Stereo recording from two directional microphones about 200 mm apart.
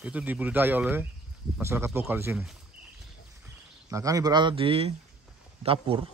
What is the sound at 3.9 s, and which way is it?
Speech, 15° right (ahead or behind).